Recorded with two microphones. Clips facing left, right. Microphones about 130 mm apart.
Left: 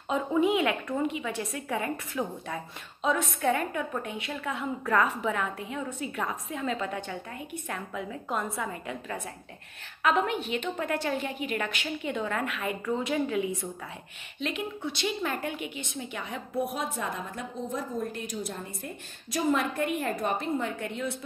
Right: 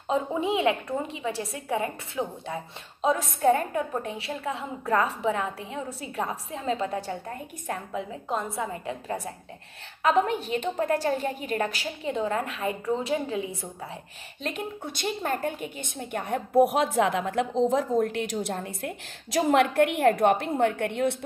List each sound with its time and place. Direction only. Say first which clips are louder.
0.1 s a woman's voice: left 1 dB; 30° right (ahead or behind)
14.4 s a woman's voice: even; 45° right (ahead or behind); by 21.2 s 65° right (ahead or behind)